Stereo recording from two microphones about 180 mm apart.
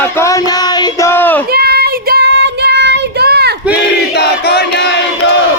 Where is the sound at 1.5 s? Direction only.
60° right (ahead or behind).